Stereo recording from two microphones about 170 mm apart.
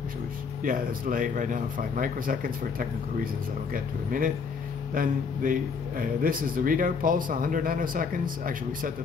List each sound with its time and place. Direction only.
0.7 s a man's voice: 55° right (ahead or behind)
3.7 s a man's voice: 55° right (ahead or behind)